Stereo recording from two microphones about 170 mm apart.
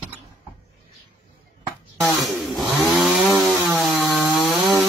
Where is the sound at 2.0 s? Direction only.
Centre (ahead or behind).